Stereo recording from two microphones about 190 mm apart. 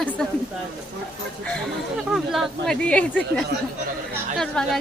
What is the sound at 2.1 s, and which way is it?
Speech, centre (ahead or behind).